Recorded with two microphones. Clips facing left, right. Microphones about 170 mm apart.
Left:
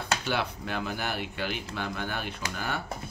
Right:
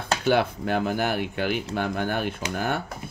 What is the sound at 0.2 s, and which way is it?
Speech, 50° right (ahead or behind).